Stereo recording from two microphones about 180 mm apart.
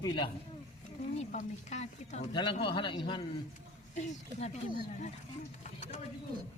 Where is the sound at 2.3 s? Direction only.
25° left (ahead or behind).